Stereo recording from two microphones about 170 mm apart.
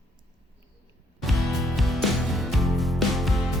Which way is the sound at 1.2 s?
Centre (ahead or behind).